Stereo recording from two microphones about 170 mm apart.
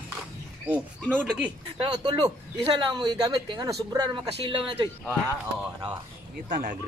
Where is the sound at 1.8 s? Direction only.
25° right (ahead or behind).